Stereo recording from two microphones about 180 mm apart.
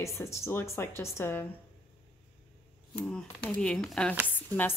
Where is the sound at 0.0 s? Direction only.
15° left (ahead or behind).